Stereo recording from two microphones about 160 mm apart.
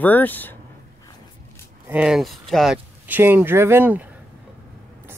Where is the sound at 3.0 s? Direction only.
10° right (ahead or behind).